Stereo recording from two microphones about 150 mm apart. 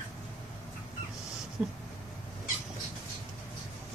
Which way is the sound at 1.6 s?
5° right (ahead or behind).